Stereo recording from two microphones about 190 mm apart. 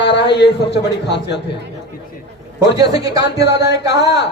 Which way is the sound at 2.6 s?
20° right (ahead or behind).